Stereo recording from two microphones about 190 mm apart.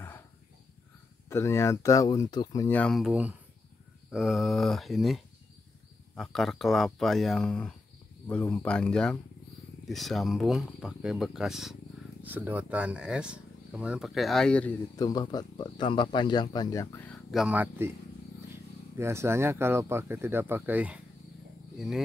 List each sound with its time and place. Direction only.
1.3 s speech: 15° left (ahead or behind)
15.0 s speech: 20° left (ahead or behind)
17.3 s speech: 5° right (ahead or behind)
18.9 s speech: 15° right (ahead or behind)